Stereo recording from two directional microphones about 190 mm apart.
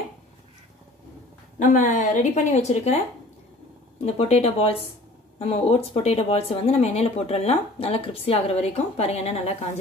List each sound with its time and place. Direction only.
1.6 s a woman's voice: 40° left (ahead or behind)